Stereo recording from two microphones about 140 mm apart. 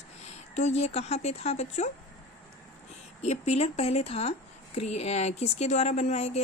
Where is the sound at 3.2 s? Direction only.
50° left (ahead or behind).